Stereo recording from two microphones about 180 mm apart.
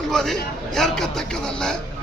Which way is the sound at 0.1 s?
Centre (ahead or behind).